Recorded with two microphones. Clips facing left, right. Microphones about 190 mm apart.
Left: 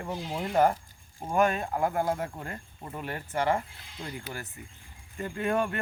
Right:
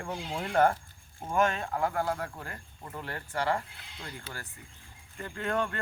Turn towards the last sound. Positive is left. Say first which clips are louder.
# left 3 dB
turn(degrees=15)  # may be behind; listen again after turning